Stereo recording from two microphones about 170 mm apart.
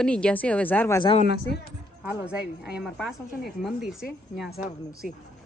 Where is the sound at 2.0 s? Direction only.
5° right (ahead or behind).